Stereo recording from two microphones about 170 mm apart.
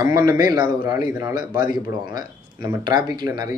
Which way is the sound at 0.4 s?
25° right (ahead or behind).